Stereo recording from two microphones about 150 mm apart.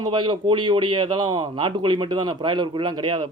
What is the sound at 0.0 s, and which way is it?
A man's voice, 30° right (ahead or behind).